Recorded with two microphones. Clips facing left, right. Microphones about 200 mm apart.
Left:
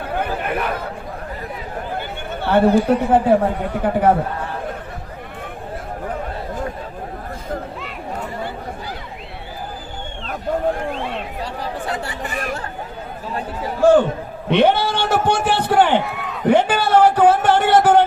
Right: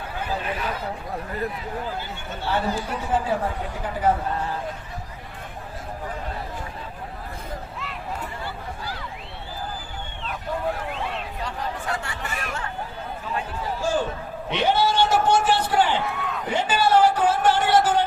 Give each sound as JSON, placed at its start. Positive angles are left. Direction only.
{"t": 0.0, "sound": "chatter", "side_deg": 60}
{"t": 1.9, "sound": "speech", "side_deg": 60}
{"t": 13.8, "sound": "a sound", "side_deg": 60}